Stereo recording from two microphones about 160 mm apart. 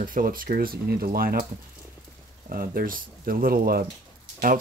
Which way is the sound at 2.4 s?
65° right (ahead or behind).